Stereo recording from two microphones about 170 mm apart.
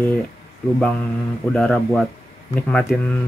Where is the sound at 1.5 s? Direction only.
5° left (ahead or behind).